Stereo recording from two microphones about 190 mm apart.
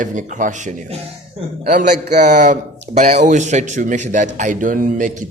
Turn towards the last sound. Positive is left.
turn(degrees=-45)  # may be behind; listen again after turning